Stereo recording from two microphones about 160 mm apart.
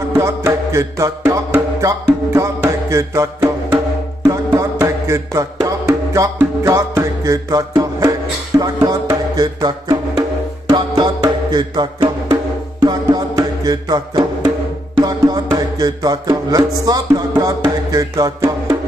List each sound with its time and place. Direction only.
0.2 s music: 20° right (ahead or behind)